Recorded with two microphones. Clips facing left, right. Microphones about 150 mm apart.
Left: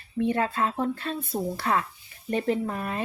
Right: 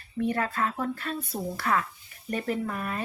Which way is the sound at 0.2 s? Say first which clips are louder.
Left 3 dB; 25° left (ahead or behind).